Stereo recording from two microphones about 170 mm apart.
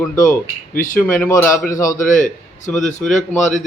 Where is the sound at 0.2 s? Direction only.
50° left (ahead or behind).